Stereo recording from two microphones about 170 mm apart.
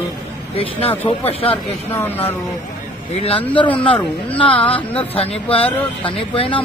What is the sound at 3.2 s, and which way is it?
Speech, 30° left (ahead or behind).